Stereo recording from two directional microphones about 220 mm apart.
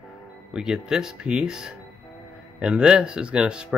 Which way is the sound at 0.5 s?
5° right (ahead or behind).